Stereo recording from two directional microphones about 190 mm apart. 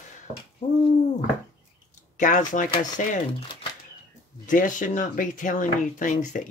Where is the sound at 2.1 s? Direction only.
40° left (ahead or behind).